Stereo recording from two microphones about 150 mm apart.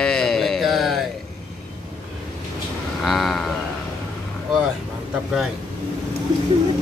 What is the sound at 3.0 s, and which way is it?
Speech, centre (ahead or behind).